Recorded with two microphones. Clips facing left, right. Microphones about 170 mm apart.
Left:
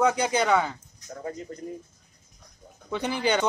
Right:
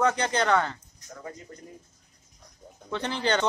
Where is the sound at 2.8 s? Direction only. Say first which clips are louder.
Left 2 dB; 10° left (ahead or behind).